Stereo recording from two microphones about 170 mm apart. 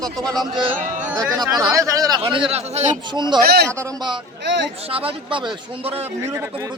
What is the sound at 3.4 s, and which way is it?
Speech, 70° right (ahead or behind).